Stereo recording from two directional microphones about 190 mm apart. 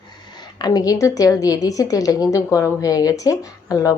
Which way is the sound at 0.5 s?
20° left (ahead or behind).